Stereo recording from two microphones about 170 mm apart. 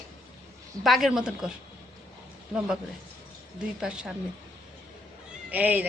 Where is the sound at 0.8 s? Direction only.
Centre (ahead or behind).